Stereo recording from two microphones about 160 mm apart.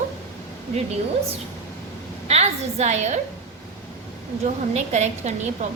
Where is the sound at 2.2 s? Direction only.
45° right (ahead or behind).